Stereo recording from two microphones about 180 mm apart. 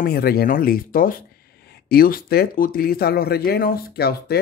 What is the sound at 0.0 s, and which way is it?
Speech, 55° left (ahead or behind).